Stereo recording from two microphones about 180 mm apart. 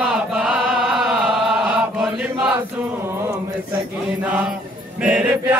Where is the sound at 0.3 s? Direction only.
5° right (ahead or behind).